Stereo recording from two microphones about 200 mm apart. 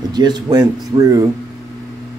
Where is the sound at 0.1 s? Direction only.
20° right (ahead or behind).